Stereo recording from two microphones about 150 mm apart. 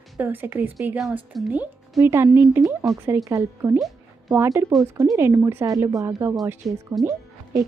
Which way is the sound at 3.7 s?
Centre (ahead or behind).